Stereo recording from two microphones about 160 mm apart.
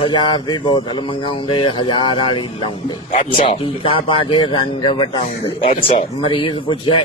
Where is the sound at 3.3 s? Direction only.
45° left (ahead or behind).